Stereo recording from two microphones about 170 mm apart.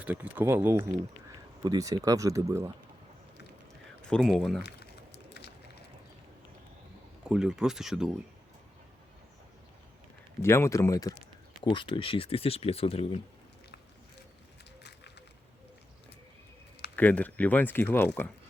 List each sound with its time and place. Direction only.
0.0 s speech: 10° right (ahead or behind)
4.1 s speech: 5° left (ahead or behind)
4.6 s a sound: 75° left (ahead or behind)
7.3 s speech: 5° right (ahead or behind)
10.4 s speech: 15° left (ahead or behind); by 13.1 s 35° left (ahead or behind)
16.9 s speech: 10° left (ahead or behind)